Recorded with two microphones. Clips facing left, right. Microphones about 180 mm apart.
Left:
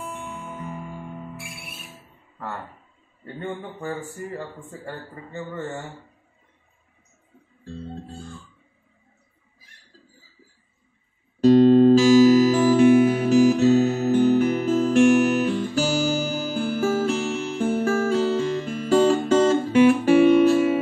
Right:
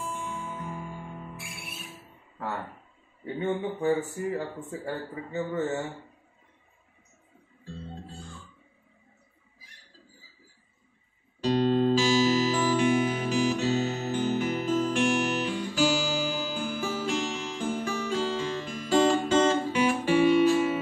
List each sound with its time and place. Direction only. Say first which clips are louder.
3.3 s a man's voice: right 3 dB; 5° right (ahead or behind)
11.4 s music: left 10 dB; 45° left (ahead or behind)